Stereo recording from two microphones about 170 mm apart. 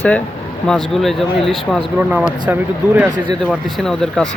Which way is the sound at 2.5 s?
10° right (ahead or behind).